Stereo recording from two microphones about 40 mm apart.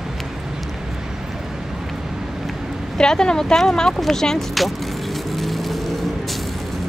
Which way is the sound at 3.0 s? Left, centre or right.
Centre.